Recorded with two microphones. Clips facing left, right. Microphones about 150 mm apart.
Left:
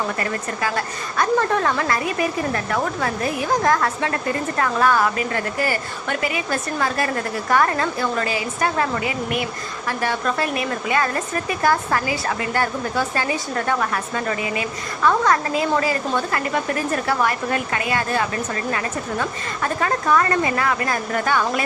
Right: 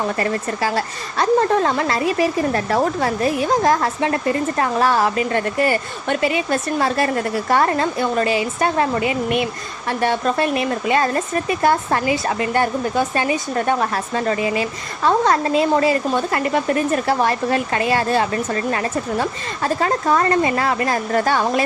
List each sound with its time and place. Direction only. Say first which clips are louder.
0.2 s a woman's voice: right 4 dB; 30° right (ahead or behind)